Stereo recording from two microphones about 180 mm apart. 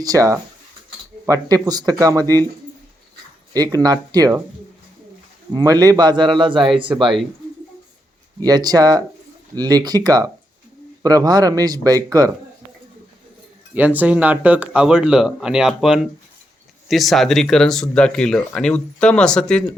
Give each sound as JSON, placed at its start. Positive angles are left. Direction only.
{"t": 0.0, "sound": "speech", "side_deg": -20}
{"t": 3.5, "sound": "speech", "side_deg": -20}
{"t": 5.5, "sound": "speech", "side_deg": -20}
{"t": 8.4, "sound": "speech", "side_deg": -20}
{"t": 13.7, "sound": "speech", "side_deg": -10}